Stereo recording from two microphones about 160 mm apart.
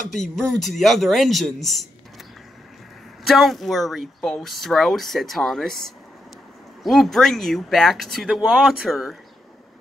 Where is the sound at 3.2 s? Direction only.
Centre (ahead or behind).